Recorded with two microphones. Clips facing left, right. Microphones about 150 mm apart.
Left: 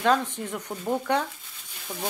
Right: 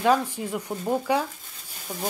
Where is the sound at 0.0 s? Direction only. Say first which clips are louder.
Right 2 dB; 10° right (ahead or behind).